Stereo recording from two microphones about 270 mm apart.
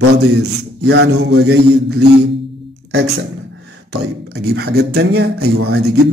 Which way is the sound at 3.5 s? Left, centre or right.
Right.